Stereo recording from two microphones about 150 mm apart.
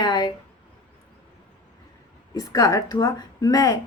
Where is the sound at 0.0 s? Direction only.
30° left (ahead or behind).